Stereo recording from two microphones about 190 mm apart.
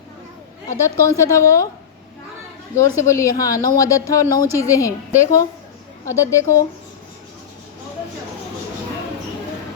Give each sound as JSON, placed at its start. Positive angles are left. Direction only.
{"t": 0.7, "sound": "a woman's voice", "side_deg": 15}
{"t": 2.7, "sound": "a woman's voice", "side_deg": 15}